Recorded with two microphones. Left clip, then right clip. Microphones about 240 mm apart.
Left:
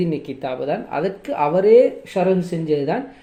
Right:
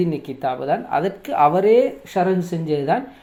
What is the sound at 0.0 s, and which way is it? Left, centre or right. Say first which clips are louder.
Speech: right 2 dB; centre.